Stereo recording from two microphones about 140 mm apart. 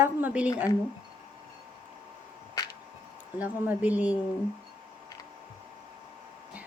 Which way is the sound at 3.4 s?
10° right (ahead or behind).